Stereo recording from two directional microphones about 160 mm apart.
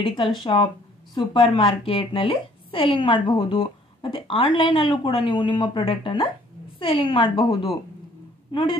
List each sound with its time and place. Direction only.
0.0 s a woman's voice: 35° left (ahead or behind)